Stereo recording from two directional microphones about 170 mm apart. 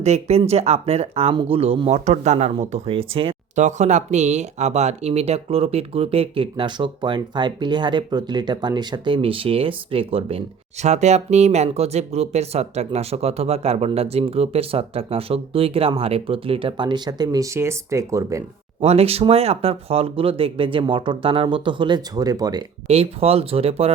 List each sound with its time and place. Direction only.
0.0 s speech: 40° right (ahead or behind); by 18.4 s 15° right (ahead or behind)
18.8 s speech: 35° right (ahead or behind); by 22.6 s 20° right (ahead or behind)
22.9 s speech: 35° right (ahead or behind)